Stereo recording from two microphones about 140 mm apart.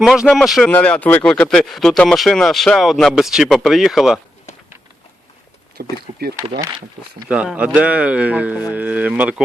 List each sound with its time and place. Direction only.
0.0 s speech: 5° right (ahead or behind)
5.8 s speech: 90° right
7.3 s speech: 10° right (ahead or behind)